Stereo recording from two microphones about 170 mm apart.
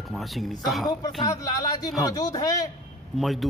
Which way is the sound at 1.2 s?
20° left (ahead or behind).